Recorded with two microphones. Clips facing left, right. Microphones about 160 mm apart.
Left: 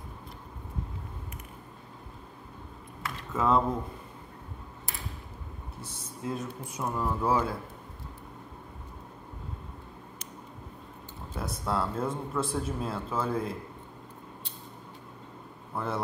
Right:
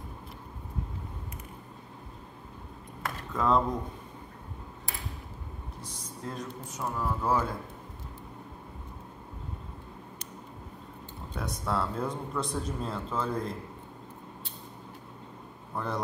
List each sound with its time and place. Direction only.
3.0 s a sound: 45° right (ahead or behind)
3.3 s a man's voice: 5° left (ahead or behind)
6.2 s a man's voice: 10° left (ahead or behind)
11.3 s speech: 5° left (ahead or behind)
15.7 s speech: 5° left (ahead or behind)